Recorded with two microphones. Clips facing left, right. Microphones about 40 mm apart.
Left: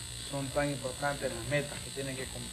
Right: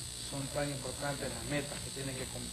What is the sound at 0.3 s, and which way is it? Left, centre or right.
Speech, left.